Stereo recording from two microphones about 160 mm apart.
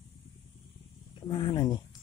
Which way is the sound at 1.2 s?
30° left (ahead or behind).